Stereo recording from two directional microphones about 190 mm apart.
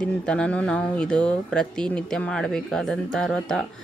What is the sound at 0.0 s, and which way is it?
Speech, 5° left (ahead or behind).